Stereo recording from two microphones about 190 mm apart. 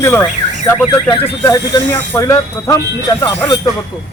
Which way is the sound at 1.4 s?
20° left (ahead or behind).